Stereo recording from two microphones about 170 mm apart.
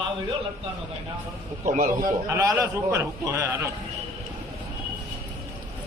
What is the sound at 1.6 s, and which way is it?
Speech, 50° right (ahead or behind).